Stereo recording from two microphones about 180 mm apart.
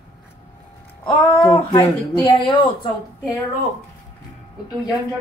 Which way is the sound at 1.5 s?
25° left (ahead or behind).